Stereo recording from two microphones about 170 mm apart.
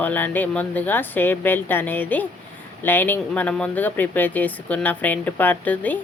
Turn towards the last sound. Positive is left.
turn(degrees=10)  # may be behind; listen again after turning